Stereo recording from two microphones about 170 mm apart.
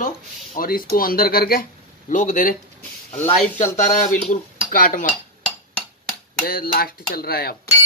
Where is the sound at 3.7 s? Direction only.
45° left (ahead or behind).